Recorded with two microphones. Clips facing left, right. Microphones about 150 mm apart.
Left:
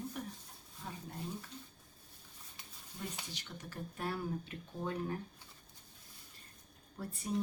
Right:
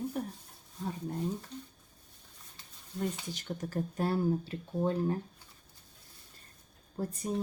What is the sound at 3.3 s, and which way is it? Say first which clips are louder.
Speech: right 11 dB; 45° right (ahead or behind).